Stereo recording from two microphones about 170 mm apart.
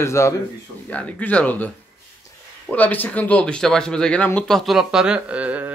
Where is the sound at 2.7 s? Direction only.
10° left (ahead or behind).